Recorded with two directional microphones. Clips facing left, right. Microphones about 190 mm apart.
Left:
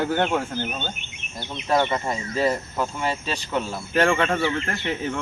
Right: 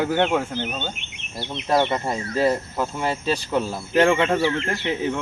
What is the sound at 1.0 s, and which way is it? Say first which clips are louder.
Speech: even; 80° right.